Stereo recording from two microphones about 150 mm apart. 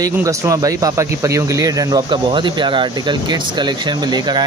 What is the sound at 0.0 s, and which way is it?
Speech, 20° right (ahead or behind).